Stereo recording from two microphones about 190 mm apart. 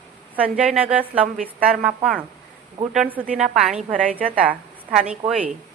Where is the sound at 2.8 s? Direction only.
30° right (ahead or behind).